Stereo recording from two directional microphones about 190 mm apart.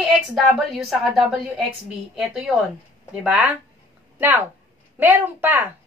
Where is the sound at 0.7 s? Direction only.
Centre (ahead or behind).